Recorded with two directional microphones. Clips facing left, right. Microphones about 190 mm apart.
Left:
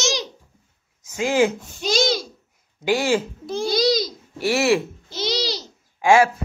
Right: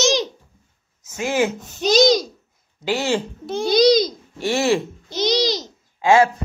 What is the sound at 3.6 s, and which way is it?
Speech, 20° right (ahead or behind).